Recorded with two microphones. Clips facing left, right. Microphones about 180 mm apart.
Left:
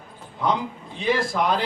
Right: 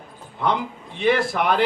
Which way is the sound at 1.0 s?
65° right (ahead or behind).